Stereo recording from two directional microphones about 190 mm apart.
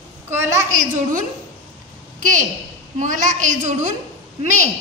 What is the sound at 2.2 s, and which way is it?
A woman's voice, 45° right (ahead or behind).